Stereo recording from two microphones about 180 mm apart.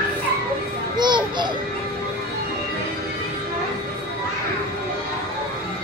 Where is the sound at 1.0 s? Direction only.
25° right (ahead or behind).